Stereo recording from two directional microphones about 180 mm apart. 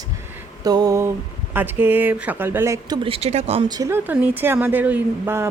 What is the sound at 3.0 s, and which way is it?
Speech, 35° right (ahead or behind).